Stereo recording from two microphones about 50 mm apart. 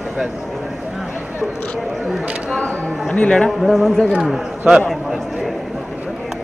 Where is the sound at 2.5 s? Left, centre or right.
Centre.